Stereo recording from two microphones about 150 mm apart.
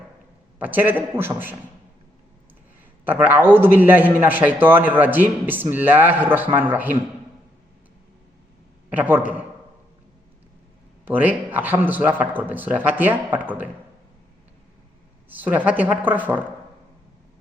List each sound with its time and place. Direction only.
0.6 s a man's voice: 10° right (ahead or behind)
3.0 s a man's voice: 10° right (ahead or behind)
8.9 s a man's voice: 10° right (ahead or behind)
11.0 s a man's voice: 10° right (ahead or behind)
15.3 s a man's voice: 10° right (ahead or behind)